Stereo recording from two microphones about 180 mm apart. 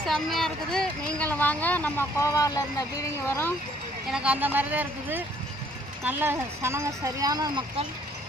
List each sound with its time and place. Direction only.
0.0 s speech: centre (ahead or behind)
4.1 s speech: 5° right (ahead or behind); by 7.9 s 25° right (ahead or behind)